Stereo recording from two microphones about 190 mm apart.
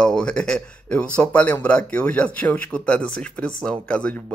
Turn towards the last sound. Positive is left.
turn(degrees=5)  # may be behind; listen again after turning